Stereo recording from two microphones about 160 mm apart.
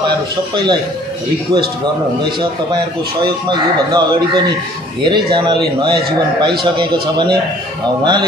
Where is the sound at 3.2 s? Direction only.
25° right (ahead or behind).